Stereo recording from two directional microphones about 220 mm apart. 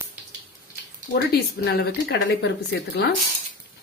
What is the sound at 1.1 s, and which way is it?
Speech, 50° left (ahead or behind).